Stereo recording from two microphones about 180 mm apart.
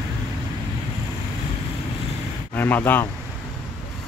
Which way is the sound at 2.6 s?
10° left (ahead or behind).